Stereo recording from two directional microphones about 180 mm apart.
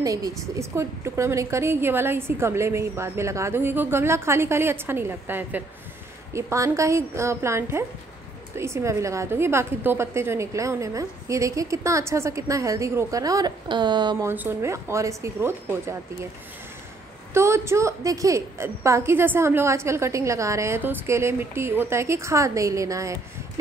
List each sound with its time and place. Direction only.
0.0 s a woman's voice: 20° right (ahead or behind)
14.2 s a woman's voice: 10° right (ahead or behind)
17.3 s a woman's voice: 15° right (ahead or behind)